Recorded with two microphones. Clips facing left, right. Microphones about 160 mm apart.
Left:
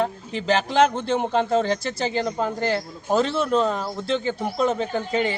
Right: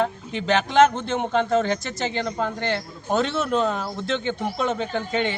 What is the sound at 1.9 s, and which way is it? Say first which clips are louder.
Speech: left 2 dB; 30° left (ahead or behind).